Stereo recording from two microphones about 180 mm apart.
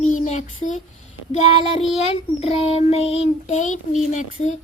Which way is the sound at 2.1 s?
35° left (ahead or behind).